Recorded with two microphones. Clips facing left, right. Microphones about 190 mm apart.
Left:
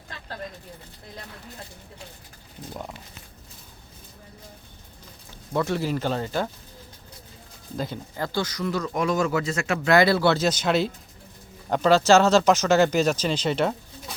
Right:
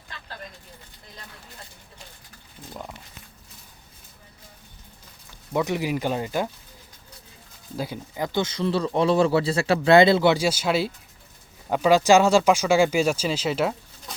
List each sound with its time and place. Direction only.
5.5 s speech: 15° right (ahead or behind)
7.8 s speech: 10° right (ahead or behind)